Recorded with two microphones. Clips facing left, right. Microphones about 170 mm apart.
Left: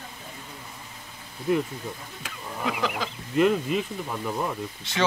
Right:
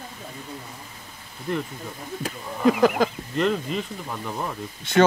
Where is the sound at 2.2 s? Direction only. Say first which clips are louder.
Right 10 dB; 45° right (ahead or behind).